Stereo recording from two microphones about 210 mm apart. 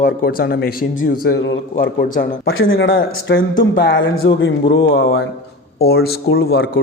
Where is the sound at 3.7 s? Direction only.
55° left (ahead or behind).